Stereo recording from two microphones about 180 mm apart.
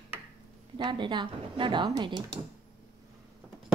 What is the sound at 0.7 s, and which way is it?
Speech, 25° right (ahead or behind).